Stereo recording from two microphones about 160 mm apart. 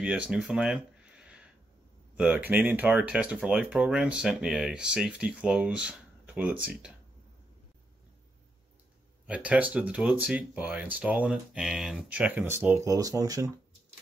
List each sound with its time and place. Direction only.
0.0 s a sound: 5° right (ahead or behind)
2.1 s speech: 10° right (ahead or behind)
9.3 s speech: 10° right (ahead or behind)